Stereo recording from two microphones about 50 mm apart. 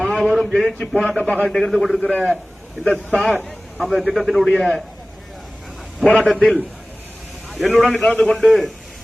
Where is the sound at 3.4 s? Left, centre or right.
Centre.